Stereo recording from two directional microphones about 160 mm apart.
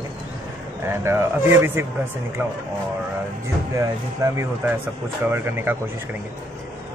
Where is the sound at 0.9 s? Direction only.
15° right (ahead or behind).